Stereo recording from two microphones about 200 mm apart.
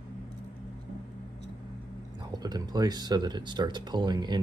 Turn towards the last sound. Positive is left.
turn(degrees=-20)  # may be behind; listen again after turning